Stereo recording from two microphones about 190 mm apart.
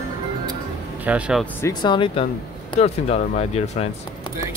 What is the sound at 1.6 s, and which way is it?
Speech, 25° left (ahead or behind).